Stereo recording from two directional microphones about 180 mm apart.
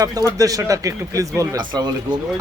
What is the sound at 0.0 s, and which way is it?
A man's voice, 20° right (ahead or behind).